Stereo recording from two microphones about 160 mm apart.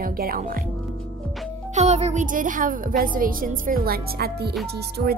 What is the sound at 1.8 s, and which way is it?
A woman's voice, 45° right (ahead or behind).